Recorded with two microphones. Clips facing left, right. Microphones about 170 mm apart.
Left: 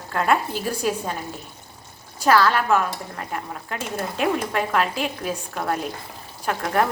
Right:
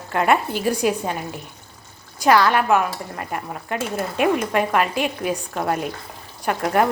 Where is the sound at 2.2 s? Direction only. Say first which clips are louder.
Right 2 dB; 15° right (ahead or behind).